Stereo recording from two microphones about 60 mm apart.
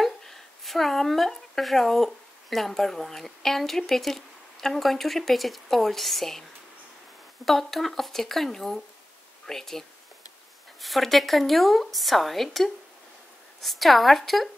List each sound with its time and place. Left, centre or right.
0.0 s speech: centre
7.4 s speech: centre